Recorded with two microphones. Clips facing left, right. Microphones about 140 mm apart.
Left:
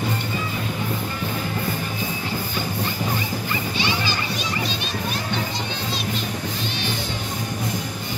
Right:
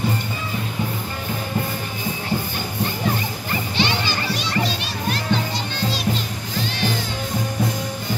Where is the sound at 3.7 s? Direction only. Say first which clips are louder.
Right 4 dB; 70° right (ahead or behind).